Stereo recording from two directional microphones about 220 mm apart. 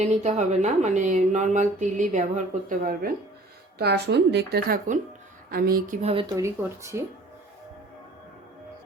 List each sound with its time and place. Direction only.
0.0 s speech: 30° right (ahead or behind)
3.8 s a woman's voice: 50° right (ahead or behind)
6.0 s speech: 30° right (ahead or behind)
6.2 s speech: 15° right (ahead or behind)